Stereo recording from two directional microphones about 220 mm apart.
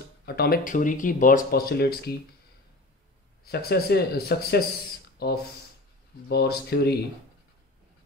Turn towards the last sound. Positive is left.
turn(degrees=50)  # may be behind; listen again after turning